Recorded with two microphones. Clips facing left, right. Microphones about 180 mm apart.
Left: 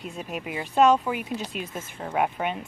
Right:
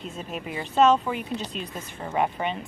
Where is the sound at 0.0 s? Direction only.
5° left (ahead or behind).